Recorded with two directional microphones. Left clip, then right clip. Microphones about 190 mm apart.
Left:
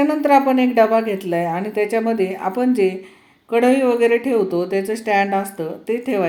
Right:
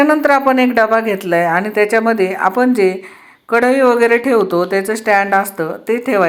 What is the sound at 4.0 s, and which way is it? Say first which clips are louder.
Speech: right 4 dB; 45° right (ahead or behind).